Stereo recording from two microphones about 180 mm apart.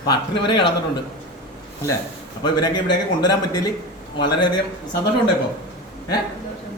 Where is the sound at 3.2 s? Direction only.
20° left (ahead or behind).